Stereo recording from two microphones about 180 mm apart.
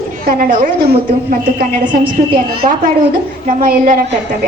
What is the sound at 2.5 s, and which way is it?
A woman's voice, 60° right (ahead or behind).